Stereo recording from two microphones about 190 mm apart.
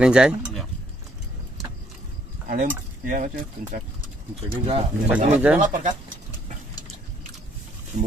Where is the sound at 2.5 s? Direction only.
45° right (ahead or behind).